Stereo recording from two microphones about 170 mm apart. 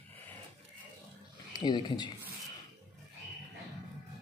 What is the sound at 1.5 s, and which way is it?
Speech, 25° left (ahead or behind).